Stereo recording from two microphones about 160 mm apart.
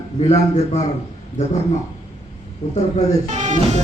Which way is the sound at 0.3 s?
45° left (ahead or behind).